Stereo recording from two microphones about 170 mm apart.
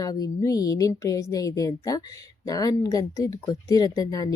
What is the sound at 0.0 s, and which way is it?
Speech, 20° left (ahead or behind).